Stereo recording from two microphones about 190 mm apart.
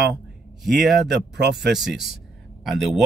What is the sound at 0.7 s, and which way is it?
Speech, centre (ahead or behind).